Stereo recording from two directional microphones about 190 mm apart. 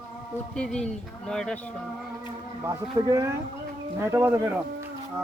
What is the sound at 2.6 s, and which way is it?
Speech, 15° right (ahead or behind).